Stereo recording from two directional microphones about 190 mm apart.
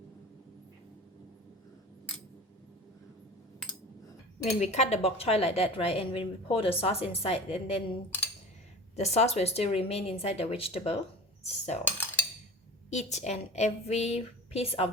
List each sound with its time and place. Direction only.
4.4 s speech: 35° left (ahead or behind)
9.0 s speech: 35° left (ahead or behind)
12.9 s speech: 35° left (ahead or behind)